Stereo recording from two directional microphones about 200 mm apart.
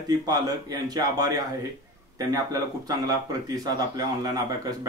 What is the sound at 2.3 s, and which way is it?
A man's voice, 20° right (ahead or behind).